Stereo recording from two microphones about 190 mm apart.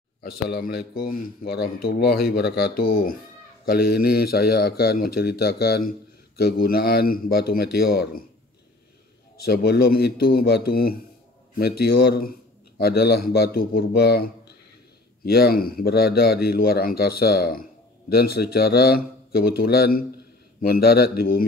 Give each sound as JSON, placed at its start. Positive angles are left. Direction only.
{"t": 0.2, "sound": "a man's voice", "side_deg": 55}
{"t": 9.4, "sound": "a man's voice", "side_deg": 55}